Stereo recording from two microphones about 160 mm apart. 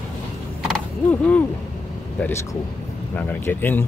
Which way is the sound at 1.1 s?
10° left (ahead or behind).